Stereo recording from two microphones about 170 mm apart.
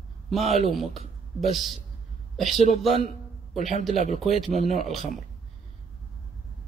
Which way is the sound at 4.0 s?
40° left (ahead or behind).